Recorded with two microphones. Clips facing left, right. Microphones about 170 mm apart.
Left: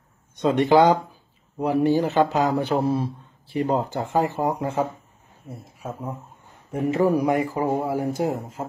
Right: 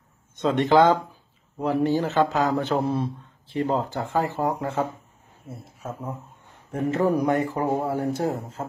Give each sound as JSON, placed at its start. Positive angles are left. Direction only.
{"t": 0.4, "sound": "a man's voice", "side_deg": 10}